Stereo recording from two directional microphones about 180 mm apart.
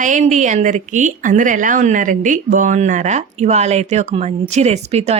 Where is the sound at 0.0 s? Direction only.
40° right (ahead or behind).